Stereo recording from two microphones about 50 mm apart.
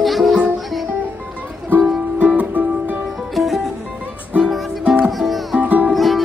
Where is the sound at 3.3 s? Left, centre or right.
Centre.